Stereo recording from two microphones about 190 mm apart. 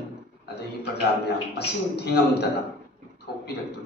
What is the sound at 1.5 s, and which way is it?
Speech, 60° left (ahead or behind).